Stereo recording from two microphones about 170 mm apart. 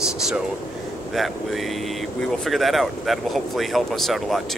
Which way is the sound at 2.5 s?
Centre (ahead or behind).